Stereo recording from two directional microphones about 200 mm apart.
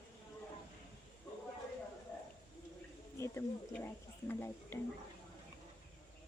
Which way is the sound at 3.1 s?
15° left (ahead or behind).